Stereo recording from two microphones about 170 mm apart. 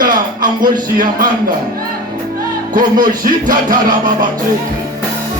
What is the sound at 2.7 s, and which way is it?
Music, 55° right (ahead or behind).